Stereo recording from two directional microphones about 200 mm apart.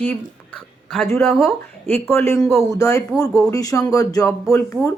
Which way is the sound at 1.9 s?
15° left (ahead or behind).